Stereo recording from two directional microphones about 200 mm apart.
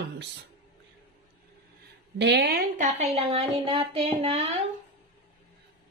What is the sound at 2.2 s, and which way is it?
Speech, 55° right (ahead or behind).